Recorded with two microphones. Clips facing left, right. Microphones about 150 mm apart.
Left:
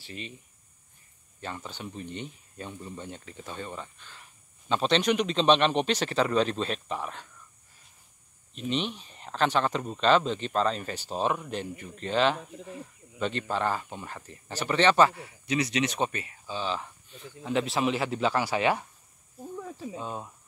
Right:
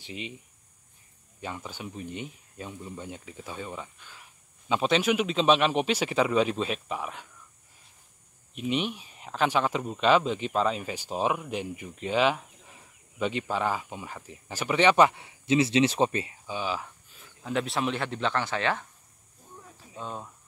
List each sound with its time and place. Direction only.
0.0 s speech: 15° right (ahead or behind)
1.4 s speech: 10° right (ahead or behind)
8.5 s speech: 10° right (ahead or behind); by 16.3 s 30° right (ahead or behind)
16.4 s speech: 10° right (ahead or behind); by 18.9 s 10° left (ahead or behind)
20.0 s speech: 5° left (ahead or behind)